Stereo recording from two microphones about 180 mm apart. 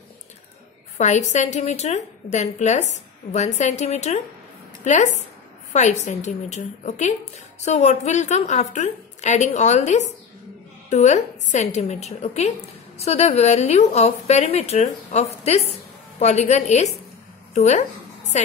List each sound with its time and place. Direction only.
0.9 s a woman's voice: 40° left (ahead or behind)